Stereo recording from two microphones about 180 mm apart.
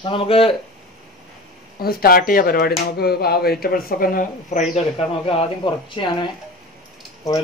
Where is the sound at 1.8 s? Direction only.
55° left (ahead or behind).